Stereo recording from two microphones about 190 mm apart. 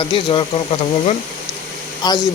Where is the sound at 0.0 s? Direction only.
25° left (ahead or behind).